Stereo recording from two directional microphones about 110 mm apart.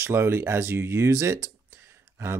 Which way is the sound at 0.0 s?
20° right (ahead or behind).